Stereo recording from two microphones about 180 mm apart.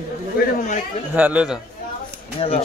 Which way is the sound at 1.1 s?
10° right (ahead or behind).